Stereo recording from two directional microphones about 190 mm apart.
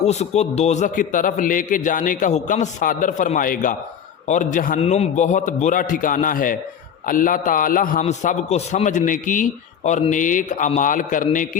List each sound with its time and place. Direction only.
0.0 s a man's voice: 35° left (ahead or behind)